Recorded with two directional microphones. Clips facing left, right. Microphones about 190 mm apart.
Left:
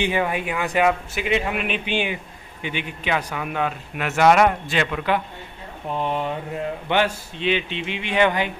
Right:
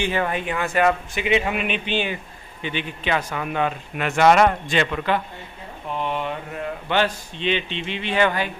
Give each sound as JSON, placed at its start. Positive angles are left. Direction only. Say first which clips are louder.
{"t": 0.0, "sound": "a man's voice", "louder": "left 1 dB", "side_deg": 10}
{"t": 1.9, "sound": "a man's voice", "louder": "even", "side_deg": 15}
{"t": 5.9, "sound": "speech", "louder": "left 1 dB", "side_deg": 35}
{"t": 6.9, "sound": "a man's voice", "louder": "even", "side_deg": 10}